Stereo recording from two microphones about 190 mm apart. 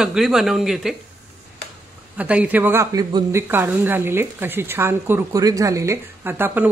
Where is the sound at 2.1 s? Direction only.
5° right (ahead or behind).